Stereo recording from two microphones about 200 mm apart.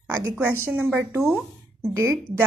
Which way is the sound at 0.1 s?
10° right (ahead or behind).